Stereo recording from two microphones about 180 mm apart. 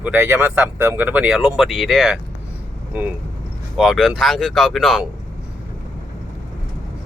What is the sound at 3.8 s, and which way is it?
Speech, 5° right (ahead or behind).